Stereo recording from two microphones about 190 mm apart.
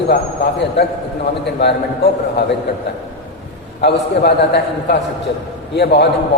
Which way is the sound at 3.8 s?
60° left (ahead or behind).